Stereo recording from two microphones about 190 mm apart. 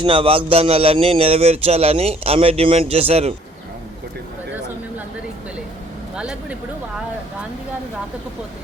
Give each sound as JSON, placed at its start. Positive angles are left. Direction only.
{"t": 0.0, "sound": "speech", "side_deg": -30}
{"t": 6.1, "sound": "speech", "side_deg": -5}